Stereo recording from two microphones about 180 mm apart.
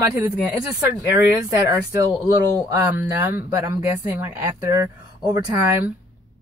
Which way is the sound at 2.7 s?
15° right (ahead or behind).